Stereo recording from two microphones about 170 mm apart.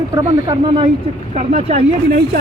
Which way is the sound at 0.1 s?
20° right (ahead or behind).